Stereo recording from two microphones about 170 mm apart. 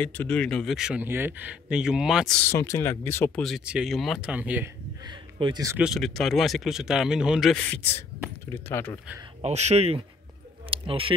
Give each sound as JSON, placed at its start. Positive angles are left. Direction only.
{"t": 0.0, "sound": "speech", "side_deg": 10}
{"t": 2.4, "sound": "speech", "side_deg": 15}
{"t": 3.4, "sound": "speech", "side_deg": -5}
{"t": 5.0, "sound": "a sound", "side_deg": -25}
{"t": 5.8, "sound": "speech", "side_deg": 0}
{"t": 8.5, "sound": "speech", "side_deg": 15}
{"t": 9.4, "sound": "speech", "side_deg": -40}